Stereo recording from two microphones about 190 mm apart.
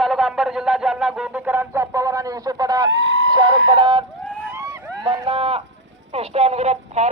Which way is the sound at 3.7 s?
25° right (ahead or behind).